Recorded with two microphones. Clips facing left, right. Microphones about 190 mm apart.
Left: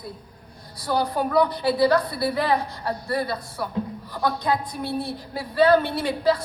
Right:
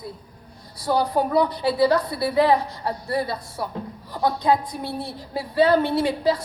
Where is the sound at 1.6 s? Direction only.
20° right (ahead or behind).